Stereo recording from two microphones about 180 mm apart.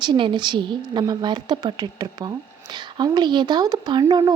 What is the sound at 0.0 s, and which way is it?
A woman's voice, 25° right (ahead or behind).